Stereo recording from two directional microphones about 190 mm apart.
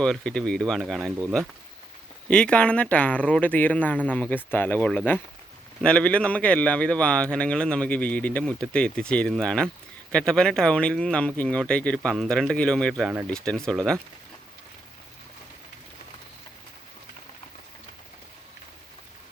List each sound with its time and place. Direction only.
0.0 s speech: 5° left (ahead or behind)
2.3 s speech: 5° left (ahead or behind)